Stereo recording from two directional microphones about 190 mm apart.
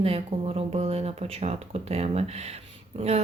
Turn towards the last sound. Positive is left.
turn(degrees=-35)  # may be behind; listen again after turning